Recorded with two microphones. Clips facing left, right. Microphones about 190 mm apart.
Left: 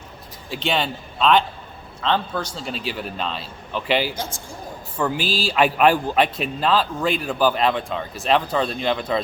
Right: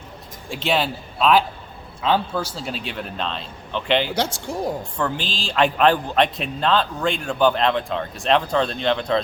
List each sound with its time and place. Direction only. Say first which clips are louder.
0.5 s a man's voice: right 1 dB; centre (ahead or behind)
4.1 s speech: right 7 dB; 75° right (ahead or behind)
4.9 s a man's voice: left 3 dB; 10° left (ahead or behind)